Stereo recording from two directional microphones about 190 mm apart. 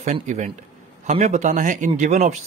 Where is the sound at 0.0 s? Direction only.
35° right (ahead or behind).